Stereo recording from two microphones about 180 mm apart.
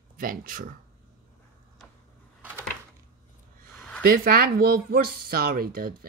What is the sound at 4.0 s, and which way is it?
Speech, 55° right (ahead or behind).